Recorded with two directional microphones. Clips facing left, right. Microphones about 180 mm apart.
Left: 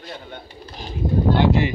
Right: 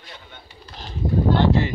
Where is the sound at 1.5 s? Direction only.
20° left (ahead or behind).